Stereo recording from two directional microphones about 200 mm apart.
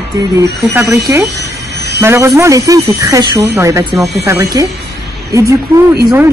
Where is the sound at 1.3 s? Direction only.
55° right (ahead or behind).